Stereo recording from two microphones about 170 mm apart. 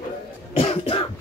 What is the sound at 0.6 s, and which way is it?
Cough, 35° left (ahead or behind).